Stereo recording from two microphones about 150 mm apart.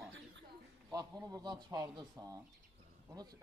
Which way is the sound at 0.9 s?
25° right (ahead or behind).